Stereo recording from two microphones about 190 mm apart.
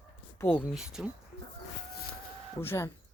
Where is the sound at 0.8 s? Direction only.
5° right (ahead or behind).